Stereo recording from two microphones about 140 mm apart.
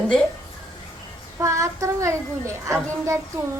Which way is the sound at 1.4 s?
20° right (ahead or behind).